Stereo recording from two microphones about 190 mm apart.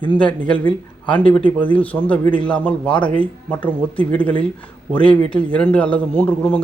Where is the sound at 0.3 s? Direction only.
5° left (ahead or behind).